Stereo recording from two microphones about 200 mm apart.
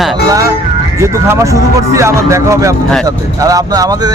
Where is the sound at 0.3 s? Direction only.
15° right (ahead or behind).